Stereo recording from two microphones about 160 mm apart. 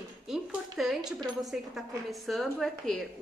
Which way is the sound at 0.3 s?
Centre (ahead or behind).